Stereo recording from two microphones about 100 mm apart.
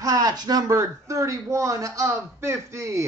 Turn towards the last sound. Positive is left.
turn(degrees=-30)  # may be behind; listen again after turning